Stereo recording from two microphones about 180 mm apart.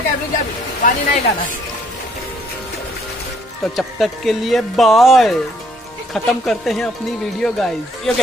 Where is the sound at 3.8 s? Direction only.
Centre (ahead or behind).